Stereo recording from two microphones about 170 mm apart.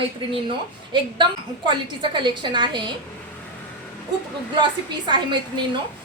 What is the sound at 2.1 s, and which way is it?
Speech, 25° right (ahead or behind).